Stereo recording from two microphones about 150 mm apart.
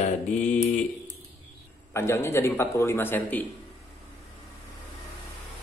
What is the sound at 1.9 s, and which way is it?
A man's voice, 15° left (ahead or behind).